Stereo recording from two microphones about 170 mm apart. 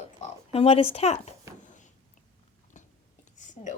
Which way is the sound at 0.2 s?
35° left (ahead or behind).